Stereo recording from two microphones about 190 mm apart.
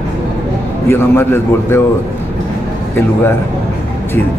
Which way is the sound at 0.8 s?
10° left (ahead or behind).